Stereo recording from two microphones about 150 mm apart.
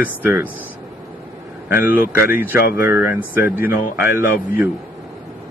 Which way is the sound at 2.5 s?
90° left.